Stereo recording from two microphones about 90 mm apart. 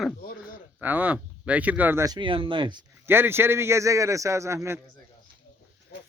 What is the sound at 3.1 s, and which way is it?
A man's voice, 25° right (ahead or behind).